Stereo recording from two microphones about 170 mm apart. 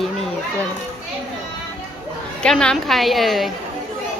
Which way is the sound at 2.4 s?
5° left (ahead or behind).